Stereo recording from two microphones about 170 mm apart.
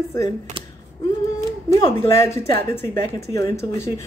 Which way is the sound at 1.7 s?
15° left (ahead or behind).